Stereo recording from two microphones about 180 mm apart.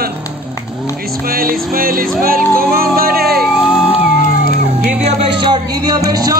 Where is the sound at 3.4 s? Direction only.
Centre (ahead or behind).